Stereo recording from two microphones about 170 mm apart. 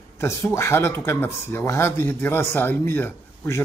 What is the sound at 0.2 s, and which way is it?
Speech, 15° left (ahead or behind).